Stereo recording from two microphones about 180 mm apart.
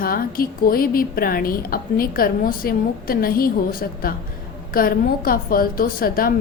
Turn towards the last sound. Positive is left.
turn(degrees=55)  # may be behind; listen again after turning